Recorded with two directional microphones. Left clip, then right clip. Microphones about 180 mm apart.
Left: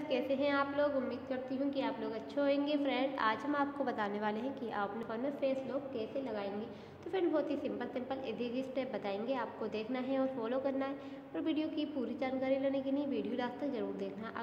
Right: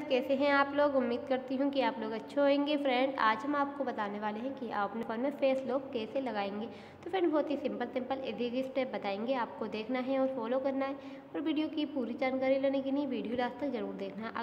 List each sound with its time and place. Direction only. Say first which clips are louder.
0.1 s a woman's voice: right 5 dB; 20° right (ahead or behind)
5.1 s a woman's voice: right 6 dB; 25° right (ahead or behind)